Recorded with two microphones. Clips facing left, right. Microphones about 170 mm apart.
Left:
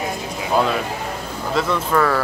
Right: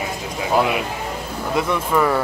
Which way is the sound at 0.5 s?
15° right (ahead or behind).